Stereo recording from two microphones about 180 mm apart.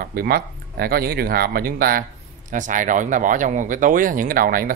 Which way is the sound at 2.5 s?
45° right (ahead or behind).